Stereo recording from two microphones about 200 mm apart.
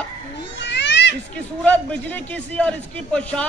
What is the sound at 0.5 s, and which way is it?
Children playing, 60° left (ahead or behind).